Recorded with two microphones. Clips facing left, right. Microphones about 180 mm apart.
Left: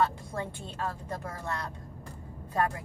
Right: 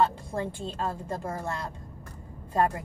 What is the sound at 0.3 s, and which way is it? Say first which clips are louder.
Speech: right 4 dB; 25° right (ahead or behind).